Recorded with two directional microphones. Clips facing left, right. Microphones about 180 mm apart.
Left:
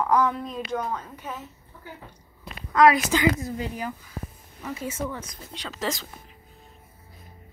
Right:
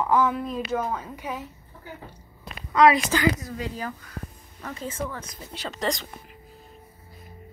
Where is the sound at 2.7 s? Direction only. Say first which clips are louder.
Even; centre (ahead or behind).